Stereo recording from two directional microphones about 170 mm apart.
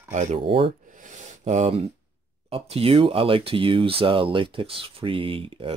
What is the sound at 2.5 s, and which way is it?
Speech, 35° right (ahead or behind).